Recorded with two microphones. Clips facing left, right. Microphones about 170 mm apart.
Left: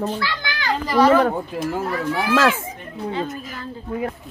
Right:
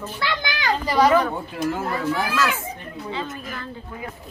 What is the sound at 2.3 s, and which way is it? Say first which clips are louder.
Speech: left 6 dB; 90° left.